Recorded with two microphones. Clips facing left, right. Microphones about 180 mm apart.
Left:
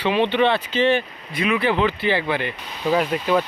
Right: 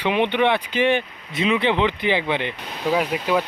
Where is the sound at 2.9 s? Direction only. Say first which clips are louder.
Left 1 dB; 5° right (ahead or behind).